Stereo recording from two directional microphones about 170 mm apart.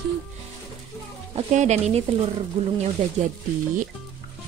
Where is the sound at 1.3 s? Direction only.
40° right (ahead or behind).